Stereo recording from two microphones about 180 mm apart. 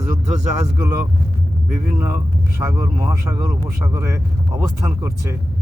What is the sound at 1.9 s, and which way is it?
A man's voice, 15° right (ahead or behind).